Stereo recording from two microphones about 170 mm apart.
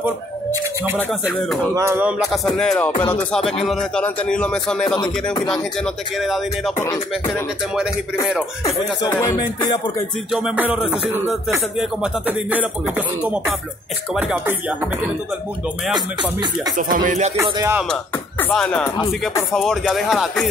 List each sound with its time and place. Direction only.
0.0 s speech: 15° right (ahead or behind)
0.9 s speech: centre (ahead or behind)
1.8 s music: 15° right (ahead or behind)
2.5 s speech: 5° left (ahead or behind)
2.9 s music: 30° left (ahead or behind)
3.6 s speech: 5° left (ahead or behind)
4.8 s speech: 25° left (ahead or behind)
6.2 s speech: centre (ahead or behind)
6.8 s music: 20° left (ahead or behind)
9.0 s speech: 20° left (ahead or behind)
10.3 s music: 5° right (ahead or behind)
16.7 s speech: 50° right (ahead or behind)
17.4 s music: 15° right (ahead or behind)
18.4 s speech: 5° left (ahead or behind)